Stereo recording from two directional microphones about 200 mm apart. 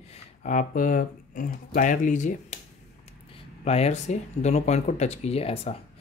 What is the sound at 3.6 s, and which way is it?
Speech, 30° left (ahead or behind).